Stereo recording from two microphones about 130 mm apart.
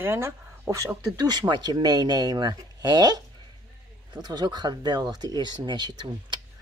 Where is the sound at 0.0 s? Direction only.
20° right (ahead or behind).